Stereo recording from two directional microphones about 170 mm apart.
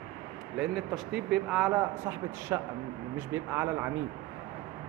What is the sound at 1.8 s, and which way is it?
A man's voice, 15° right (ahead or behind).